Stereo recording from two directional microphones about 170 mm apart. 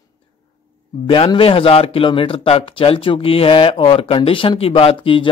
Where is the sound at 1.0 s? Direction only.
30° left (ahead or behind).